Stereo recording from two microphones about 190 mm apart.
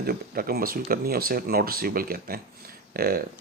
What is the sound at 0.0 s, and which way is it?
Speech, 50° right (ahead or behind).